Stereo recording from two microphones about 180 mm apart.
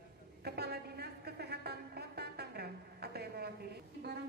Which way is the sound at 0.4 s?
65° right (ahead or behind).